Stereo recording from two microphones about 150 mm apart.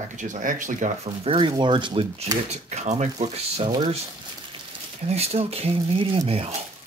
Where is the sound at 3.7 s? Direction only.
35° right (ahead or behind).